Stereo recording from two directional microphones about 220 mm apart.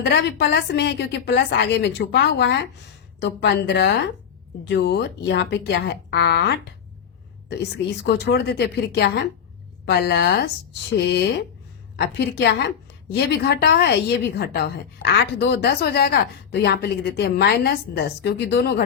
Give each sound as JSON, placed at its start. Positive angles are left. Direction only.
{"t": 0.0, "sound": "a woman's voice", "side_deg": 50}
{"t": 7.6, "sound": "a woman's voice", "side_deg": 50}